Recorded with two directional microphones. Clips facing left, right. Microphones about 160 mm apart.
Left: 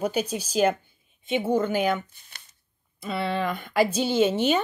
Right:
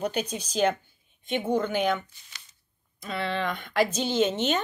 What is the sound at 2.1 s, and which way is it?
Shuffling cards, 55° left (ahead or behind).